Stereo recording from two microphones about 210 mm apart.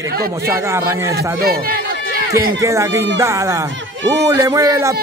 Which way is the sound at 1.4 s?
45° right (ahead or behind).